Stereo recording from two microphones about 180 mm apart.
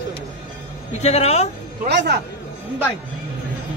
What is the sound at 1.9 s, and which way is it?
Speech, 70° right (ahead or behind).